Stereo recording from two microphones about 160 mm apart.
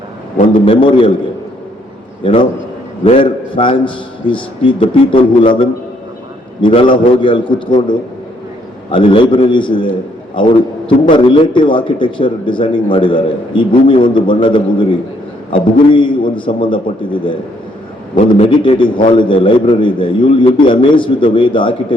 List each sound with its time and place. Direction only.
0.5 s a man's voice: 35° left (ahead or behind)
2.2 s a man's voice: 30° left (ahead or behind)